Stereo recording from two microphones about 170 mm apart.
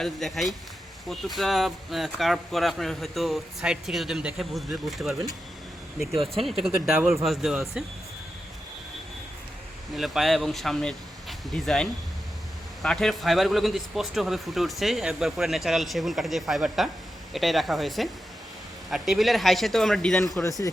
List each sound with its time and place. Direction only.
0.0 s speech: centre (ahead or behind)
6.4 s speech: centre (ahead or behind)
6.7 s speech: 10° right (ahead or behind)
7.3 s speech: centre (ahead or behind)
9.9 s speech: centre (ahead or behind)
20.4 s a man's voice: 20° left (ahead or behind)